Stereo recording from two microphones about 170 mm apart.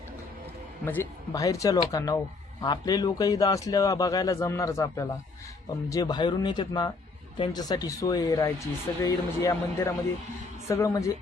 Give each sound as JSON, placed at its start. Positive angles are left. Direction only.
{"t": 0.9, "sound": "speech", "side_deg": 15}